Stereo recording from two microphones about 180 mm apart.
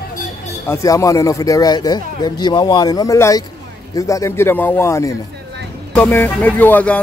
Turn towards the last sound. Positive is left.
turn(degrees=10)  # may be behind; listen again after turning